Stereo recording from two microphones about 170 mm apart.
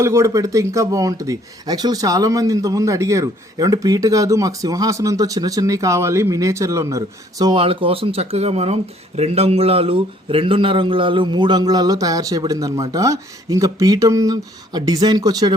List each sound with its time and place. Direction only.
0.0 s speech: 15° right (ahead or behind)